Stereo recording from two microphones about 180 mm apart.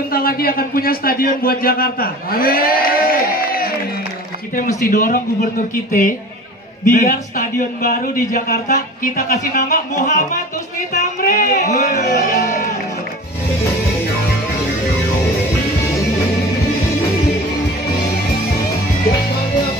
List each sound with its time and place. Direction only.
0.1 s speech: 55° left (ahead or behind)
4.9 s a man's voice: 50° left (ahead or behind)
12.0 s music: 55° left (ahead or behind)